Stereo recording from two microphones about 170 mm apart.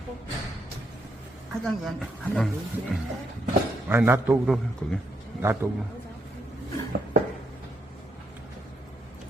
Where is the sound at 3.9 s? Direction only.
15° right (ahead or behind).